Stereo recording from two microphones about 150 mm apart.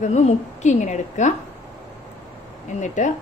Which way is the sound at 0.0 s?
50° left (ahead or behind).